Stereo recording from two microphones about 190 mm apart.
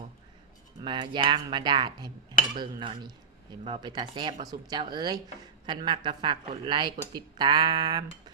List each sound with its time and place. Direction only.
0.8 s speech: 25° right (ahead or behind)